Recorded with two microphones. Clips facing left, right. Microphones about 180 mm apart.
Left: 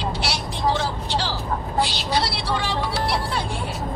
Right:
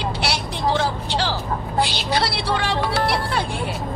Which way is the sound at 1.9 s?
60° right (ahead or behind).